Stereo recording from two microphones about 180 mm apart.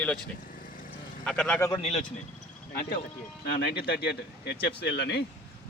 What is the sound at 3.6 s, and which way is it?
Speech, 60° left (ahead or behind).